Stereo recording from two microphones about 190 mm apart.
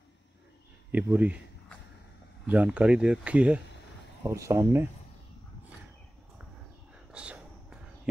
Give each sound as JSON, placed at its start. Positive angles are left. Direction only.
{"t": 0.9, "sound": "speech", "side_deg": -10}
{"t": 2.4, "sound": "speech", "side_deg": -5}
{"t": 7.1, "sound": "a sound", "side_deg": -5}